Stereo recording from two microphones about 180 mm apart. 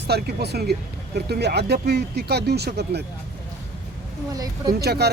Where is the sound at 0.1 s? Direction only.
65° right (ahead or behind).